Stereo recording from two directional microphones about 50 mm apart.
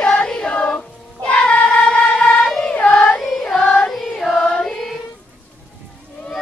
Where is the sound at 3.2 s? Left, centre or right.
Centre.